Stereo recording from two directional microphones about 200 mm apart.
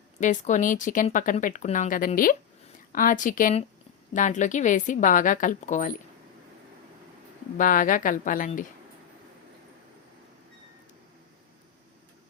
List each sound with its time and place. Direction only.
0.2 s a woman's voice: 40° left (ahead or behind)
7.6 s speech: 40° left (ahead or behind)